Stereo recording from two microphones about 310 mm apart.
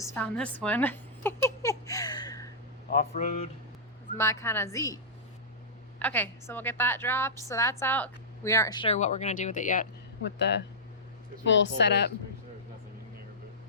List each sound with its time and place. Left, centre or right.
0.0 s a sound: centre
2.9 s speech: left
4.2 s a woman's voice: centre
6.0 s a woman's voice: centre; by 12.1 s left